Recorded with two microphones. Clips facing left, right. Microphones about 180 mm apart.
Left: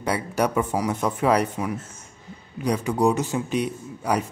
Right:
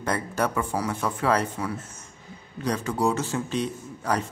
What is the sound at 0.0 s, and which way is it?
Speech, 10° left (ahead or behind).